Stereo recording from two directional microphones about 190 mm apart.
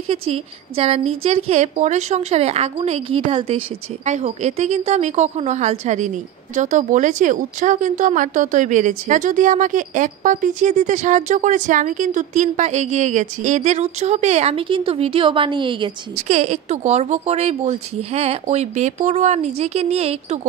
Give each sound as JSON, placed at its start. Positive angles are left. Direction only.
{"t": 0.1, "sound": "speech", "side_deg": -30}
{"t": 16.2, "sound": "speech", "side_deg": -35}